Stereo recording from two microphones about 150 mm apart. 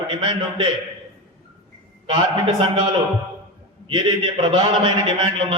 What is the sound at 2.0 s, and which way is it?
A man's voice, 30° right (ahead or behind).